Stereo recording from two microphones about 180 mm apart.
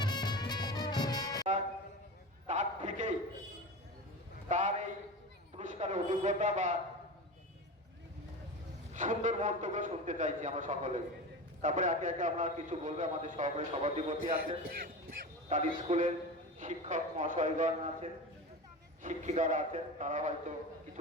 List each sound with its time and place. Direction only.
0.0 s music: 25° left (ahead or behind)
2.5 s a sound: 40° right (ahead or behind)
4.4 s a sound: 40° right (ahead or behind)
8.9 s a man's voice: 45° right (ahead or behind)
14.2 s a man's voice: 55° right (ahead or behind)
15.4 s a man's voice: 40° right (ahead or behind)